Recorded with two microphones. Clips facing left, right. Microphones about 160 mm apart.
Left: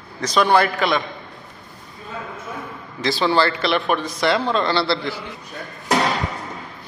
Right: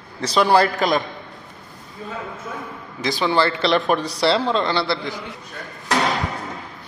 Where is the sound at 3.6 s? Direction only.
35° right (ahead or behind); by 5.2 s 15° right (ahead or behind).